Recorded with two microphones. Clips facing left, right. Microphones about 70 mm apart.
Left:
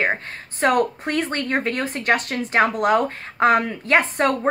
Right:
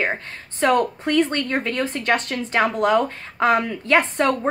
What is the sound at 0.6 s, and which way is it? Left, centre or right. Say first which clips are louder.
A woman's voice: even; left.